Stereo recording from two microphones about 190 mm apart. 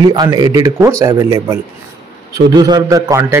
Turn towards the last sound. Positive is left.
turn(degrees=-15)  # may be behind; listen again after turning